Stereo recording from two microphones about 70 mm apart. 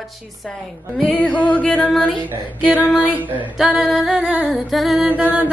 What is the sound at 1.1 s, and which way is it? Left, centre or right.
Music, centre.